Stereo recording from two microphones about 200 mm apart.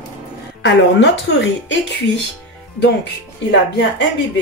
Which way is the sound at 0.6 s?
60° left (ahead or behind).